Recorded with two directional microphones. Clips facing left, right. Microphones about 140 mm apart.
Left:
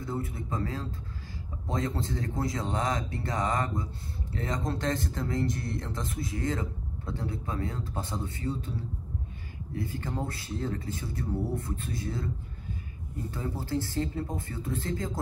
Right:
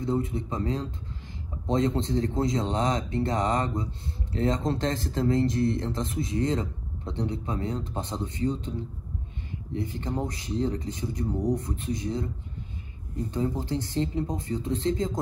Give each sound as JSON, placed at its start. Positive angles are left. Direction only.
{"t": 0.0, "sound": "speech", "side_deg": -20}
{"t": 13.3, "sound": "speech", "side_deg": -20}